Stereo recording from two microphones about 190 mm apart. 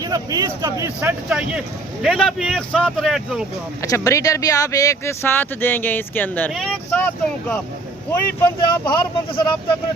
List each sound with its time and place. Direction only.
0.0 s speech: 20° right (ahead or behind)
1.3 s speech: 5° right (ahead or behind)
3.8 s speech: 15° left (ahead or behind)
8.4 s speech: 25° left (ahead or behind)